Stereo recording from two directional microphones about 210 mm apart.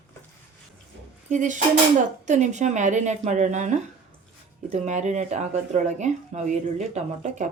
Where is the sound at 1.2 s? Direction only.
35° right (ahead or behind).